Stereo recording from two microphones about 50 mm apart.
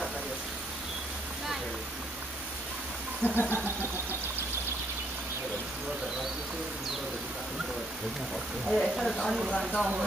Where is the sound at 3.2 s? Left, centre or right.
Left.